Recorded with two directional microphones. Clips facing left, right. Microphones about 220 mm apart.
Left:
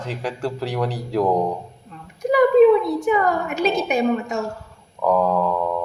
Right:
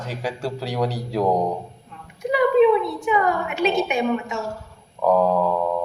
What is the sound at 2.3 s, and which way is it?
A woman's voice, 40° left (ahead or behind).